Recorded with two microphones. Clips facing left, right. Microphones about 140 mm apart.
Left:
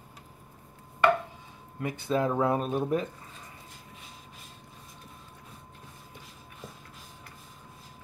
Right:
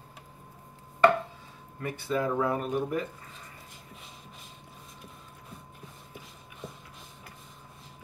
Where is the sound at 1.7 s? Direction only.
20° left (ahead or behind).